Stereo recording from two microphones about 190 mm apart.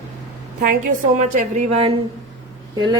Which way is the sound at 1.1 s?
40° right (ahead or behind).